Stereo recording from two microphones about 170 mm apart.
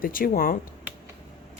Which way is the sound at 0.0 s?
55° left (ahead or behind).